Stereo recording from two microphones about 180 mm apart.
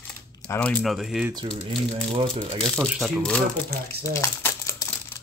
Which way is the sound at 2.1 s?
30° right (ahead or behind).